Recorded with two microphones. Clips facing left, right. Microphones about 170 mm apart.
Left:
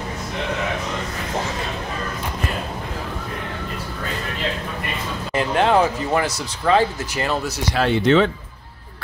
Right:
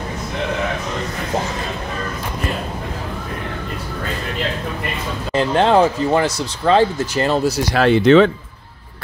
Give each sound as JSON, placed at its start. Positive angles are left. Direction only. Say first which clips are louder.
{"t": 5.3, "sound": "speech", "louder": "right 3 dB", "side_deg": -30}
{"t": 7.7, "sound": "speech", "louder": "right 5 dB", "side_deg": -90}